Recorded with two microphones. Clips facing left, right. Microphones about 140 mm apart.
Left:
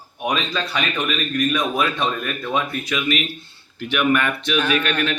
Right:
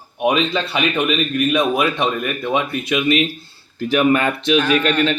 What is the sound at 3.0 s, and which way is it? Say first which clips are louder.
Speech: right 6 dB; 30° right (ahead or behind).